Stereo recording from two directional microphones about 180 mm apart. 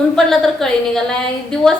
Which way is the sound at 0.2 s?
Centre (ahead or behind).